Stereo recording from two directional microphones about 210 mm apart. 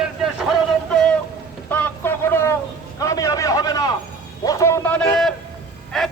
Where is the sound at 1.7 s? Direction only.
10° left (ahead or behind).